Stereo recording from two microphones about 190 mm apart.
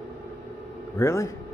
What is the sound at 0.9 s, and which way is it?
Speech, 15° left (ahead or behind).